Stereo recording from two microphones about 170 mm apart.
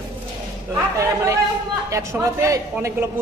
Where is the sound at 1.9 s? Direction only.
20° right (ahead or behind).